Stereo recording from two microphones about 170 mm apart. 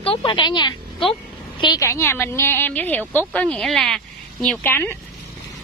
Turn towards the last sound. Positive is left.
turn(degrees=10)  # may be behind; listen again after turning